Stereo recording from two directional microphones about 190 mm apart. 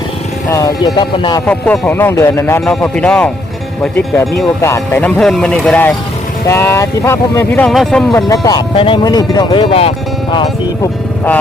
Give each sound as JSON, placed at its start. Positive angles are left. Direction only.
{"t": 0.9, "sound": "speech", "side_deg": 25}
{"t": 1.5, "sound": "speech", "side_deg": 5}
{"t": 7.7, "sound": "speech", "side_deg": 0}
{"t": 8.1, "sound": "speech", "side_deg": 20}